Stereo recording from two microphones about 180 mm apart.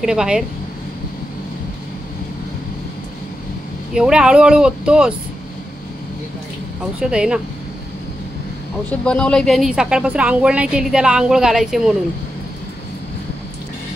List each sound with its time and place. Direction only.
0.0 s a woman's voice: 5° right (ahead or behind)
3.9 s a woman's voice: 5° right (ahead or behind)
6.8 s a woman's voice: 5° right (ahead or behind)
9.0 s a woman's voice: 5° left (ahead or behind)